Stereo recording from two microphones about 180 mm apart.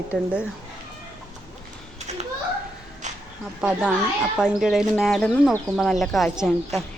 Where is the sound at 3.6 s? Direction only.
5° right (ahead or behind).